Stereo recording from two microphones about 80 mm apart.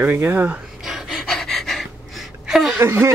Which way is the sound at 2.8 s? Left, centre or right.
Right.